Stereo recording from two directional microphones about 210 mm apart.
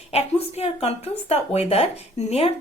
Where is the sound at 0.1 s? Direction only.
30° left (ahead or behind).